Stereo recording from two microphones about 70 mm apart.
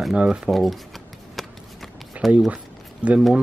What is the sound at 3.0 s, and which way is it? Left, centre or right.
Speech, centre.